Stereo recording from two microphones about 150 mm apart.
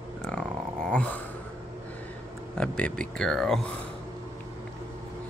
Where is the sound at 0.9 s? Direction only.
5° left (ahead or behind).